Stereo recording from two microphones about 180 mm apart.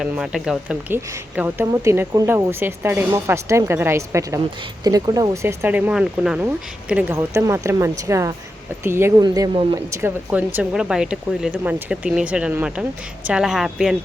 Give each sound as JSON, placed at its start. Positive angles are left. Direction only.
{"t": 0.0, "sound": "speech", "side_deg": -5}